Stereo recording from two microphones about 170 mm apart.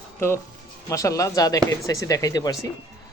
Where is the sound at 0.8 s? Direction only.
20° left (ahead or behind).